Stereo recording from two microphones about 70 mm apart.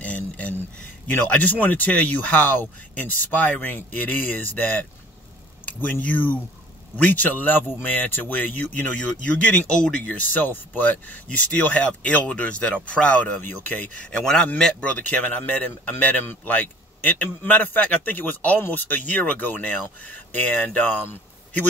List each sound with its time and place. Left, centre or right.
0.0 s a sound: centre
1.1 s a man's voice: left
14.1 s a man's voice: centre; by 21.6 s left